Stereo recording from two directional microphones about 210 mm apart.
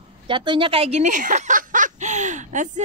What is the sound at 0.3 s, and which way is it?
Speech, 20° right (ahead or behind).